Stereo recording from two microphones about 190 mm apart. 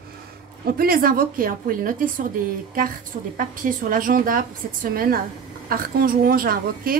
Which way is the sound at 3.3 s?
45° right (ahead or behind).